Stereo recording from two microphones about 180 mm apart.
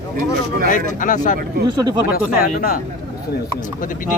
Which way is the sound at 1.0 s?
45° left (ahead or behind).